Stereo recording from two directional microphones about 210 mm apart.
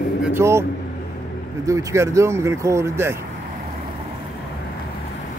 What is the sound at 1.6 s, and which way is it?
Speech, 15° right (ahead or behind).